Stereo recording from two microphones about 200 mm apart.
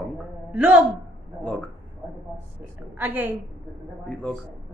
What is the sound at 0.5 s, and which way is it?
Speech, 10° right (ahead or behind).